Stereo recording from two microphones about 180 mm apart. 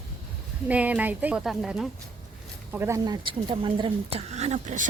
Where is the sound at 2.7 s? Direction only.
15° right (ahead or behind).